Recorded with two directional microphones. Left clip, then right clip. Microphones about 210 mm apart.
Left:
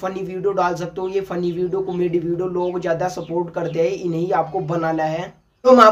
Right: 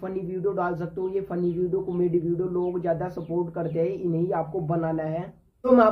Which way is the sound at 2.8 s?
10° left (ahead or behind).